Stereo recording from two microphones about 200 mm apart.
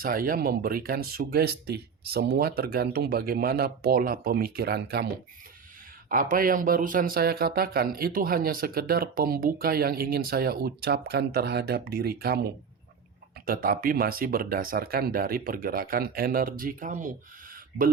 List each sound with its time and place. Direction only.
0.0 s speech: 45° right (ahead or behind)
6.1 s speech: 40° right (ahead or behind)
17.5 s a sound: 45° right (ahead or behind)